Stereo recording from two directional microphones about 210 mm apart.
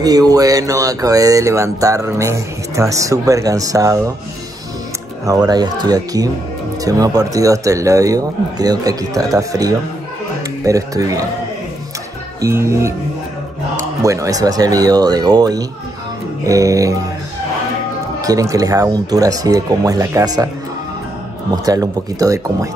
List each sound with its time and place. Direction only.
0.0 s speech: 20° right (ahead or behind)
5.2 s speech: 15° right (ahead or behind)
12.4 s speech: 15° right (ahead or behind)
18.2 s speech: 15° right (ahead or behind)
21.6 s speech: 15° right (ahead or behind)